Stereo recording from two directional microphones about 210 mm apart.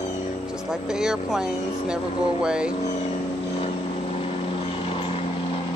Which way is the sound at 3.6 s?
30° left (ahead or behind).